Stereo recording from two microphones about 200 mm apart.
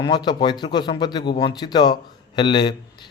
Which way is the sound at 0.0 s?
20° left (ahead or behind).